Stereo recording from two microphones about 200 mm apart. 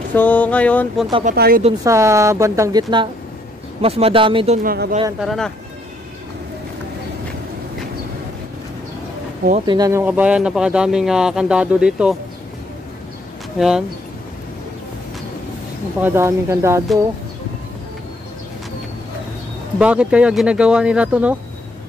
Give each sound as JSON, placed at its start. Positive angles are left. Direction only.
{"t": 0.1, "sound": "a sound", "side_deg": 10}
{"t": 1.2, "sound": "speech", "side_deg": -50}
{"t": 1.6, "sound": "speech", "side_deg": -20}
{"t": 4.6, "sound": "speech", "side_deg": -50}
{"t": 5.2, "sound": "speech", "side_deg": 0}
{"t": 9.7, "sound": "speech", "side_deg": -15}
{"t": 13.6, "sound": "speech", "side_deg": -5}
{"t": 16.0, "sound": "speech", "side_deg": -10}
{"t": 19.8, "sound": "speech", "side_deg": -5}